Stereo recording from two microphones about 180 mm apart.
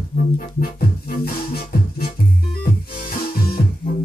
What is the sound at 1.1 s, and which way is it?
Music, 60° left (ahead or behind).